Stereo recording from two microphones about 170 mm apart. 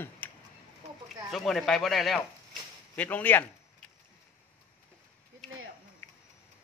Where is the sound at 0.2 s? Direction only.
10° left (ahead or behind).